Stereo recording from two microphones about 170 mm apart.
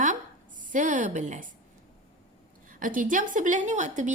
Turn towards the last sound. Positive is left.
turn(degrees=-45)  # may be behind; listen again after turning